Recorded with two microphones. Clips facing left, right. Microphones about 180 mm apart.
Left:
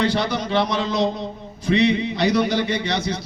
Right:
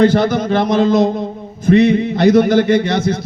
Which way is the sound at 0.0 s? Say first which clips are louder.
Right 9 dB; 45° right (ahead or behind).